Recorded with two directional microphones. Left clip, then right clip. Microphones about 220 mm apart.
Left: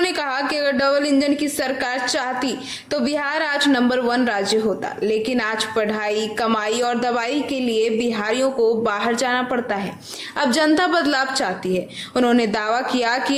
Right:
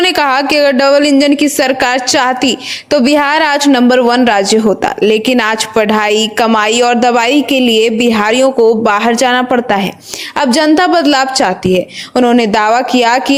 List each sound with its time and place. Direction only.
0.0 s a woman's voice: 35° right (ahead or behind)